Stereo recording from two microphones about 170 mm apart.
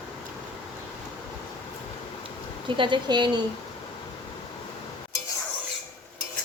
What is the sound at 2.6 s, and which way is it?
Speech, 30° right (ahead or behind).